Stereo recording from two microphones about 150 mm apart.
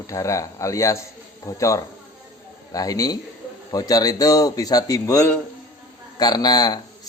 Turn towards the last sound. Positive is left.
turn(degrees=25)  # may be behind; listen again after turning